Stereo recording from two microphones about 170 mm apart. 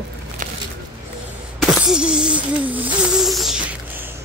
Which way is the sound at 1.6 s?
5° right (ahead or behind).